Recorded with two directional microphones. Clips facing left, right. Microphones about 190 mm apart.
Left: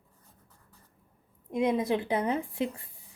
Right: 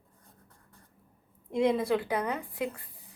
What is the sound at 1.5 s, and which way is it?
A woman's voice, 20° left (ahead or behind).